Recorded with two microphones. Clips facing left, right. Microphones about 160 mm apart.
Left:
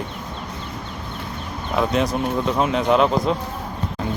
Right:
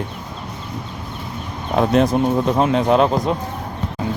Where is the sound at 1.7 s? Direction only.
40° right (ahead or behind).